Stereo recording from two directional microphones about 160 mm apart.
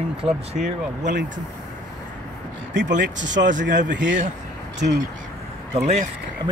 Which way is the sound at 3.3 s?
50° right (ahead or behind).